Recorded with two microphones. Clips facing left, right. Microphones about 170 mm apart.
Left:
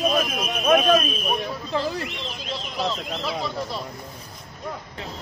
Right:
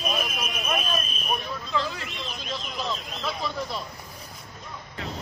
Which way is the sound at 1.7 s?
35° left (ahead or behind).